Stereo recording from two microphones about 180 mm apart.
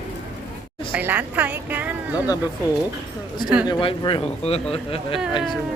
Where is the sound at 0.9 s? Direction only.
10° right (ahead or behind).